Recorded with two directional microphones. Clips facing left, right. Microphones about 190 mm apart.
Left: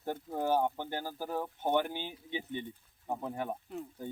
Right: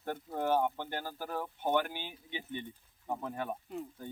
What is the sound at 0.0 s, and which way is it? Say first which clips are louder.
Speech: left 1 dB; 10° left (ahead or behind).